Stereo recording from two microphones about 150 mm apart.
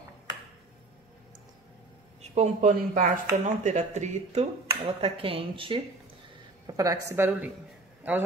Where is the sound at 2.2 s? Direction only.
50° right (ahead or behind).